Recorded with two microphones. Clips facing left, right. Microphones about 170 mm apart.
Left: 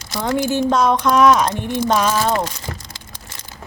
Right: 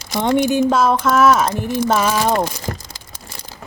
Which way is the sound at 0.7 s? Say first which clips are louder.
Even; 5° right (ahead or behind).